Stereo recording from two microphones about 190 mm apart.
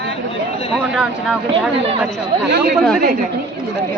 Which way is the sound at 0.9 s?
5° right (ahead or behind).